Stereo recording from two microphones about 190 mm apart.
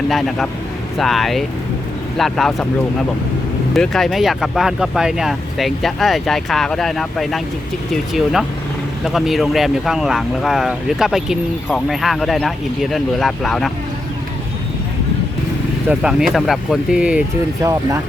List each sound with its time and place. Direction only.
0.1 s speech: centre (ahead or behind)
3.8 s speech: centre (ahead or behind)
15.9 s speech: 5° right (ahead or behind)
17.6 s speech: 15° right (ahead or behind)